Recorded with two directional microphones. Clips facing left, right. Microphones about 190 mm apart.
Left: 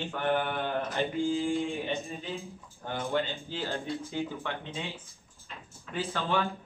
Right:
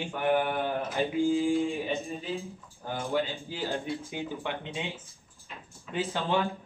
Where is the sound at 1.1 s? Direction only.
15° right (ahead or behind).